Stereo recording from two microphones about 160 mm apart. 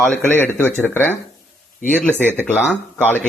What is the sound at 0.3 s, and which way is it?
Speech, 15° left (ahead or behind).